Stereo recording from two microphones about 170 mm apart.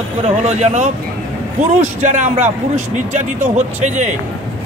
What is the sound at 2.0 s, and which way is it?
Speech, 45° right (ahead or behind).